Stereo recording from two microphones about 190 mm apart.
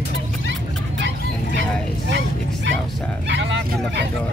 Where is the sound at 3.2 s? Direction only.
65° right (ahead or behind).